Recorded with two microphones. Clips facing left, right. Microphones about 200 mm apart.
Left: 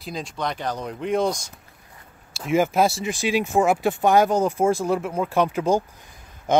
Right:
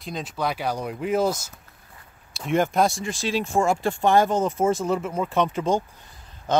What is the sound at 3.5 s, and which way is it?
Speech, 5° left (ahead or behind).